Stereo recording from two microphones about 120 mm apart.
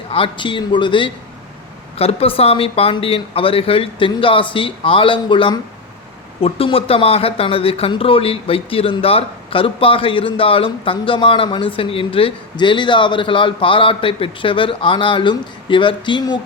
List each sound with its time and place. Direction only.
0.1 s speech: 45° left (ahead or behind)
2.0 s speech: 55° left (ahead or behind)